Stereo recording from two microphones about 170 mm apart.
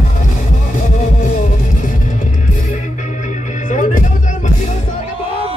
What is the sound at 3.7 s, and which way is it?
Music, 45° left (ahead or behind).